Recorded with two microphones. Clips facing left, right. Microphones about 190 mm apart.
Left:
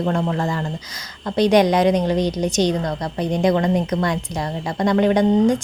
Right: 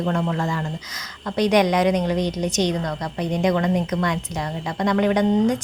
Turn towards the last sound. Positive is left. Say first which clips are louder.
# left 3 dB
turn(degrees=30)  # may be behind; listen again after turning